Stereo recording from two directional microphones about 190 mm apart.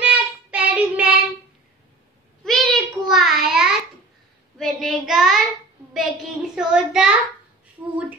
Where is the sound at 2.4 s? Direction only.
Centre (ahead or behind).